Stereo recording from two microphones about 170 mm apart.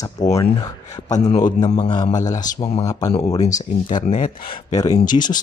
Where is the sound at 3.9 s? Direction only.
50° left (ahead or behind).